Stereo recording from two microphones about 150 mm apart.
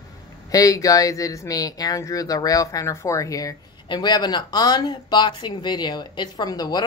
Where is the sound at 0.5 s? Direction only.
25° left (ahead or behind).